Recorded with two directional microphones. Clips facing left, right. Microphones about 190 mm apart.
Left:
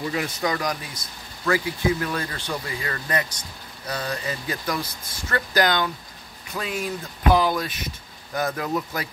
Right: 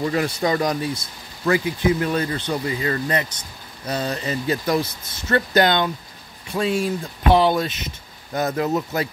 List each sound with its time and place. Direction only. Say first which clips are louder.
0.1 s speech: right 5 dB; 40° right (ahead or behind)
0.5 s speech: right 6 dB; 25° right (ahead or behind)